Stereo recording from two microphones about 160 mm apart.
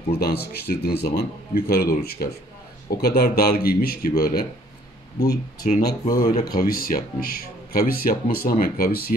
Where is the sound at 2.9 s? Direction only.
90° left.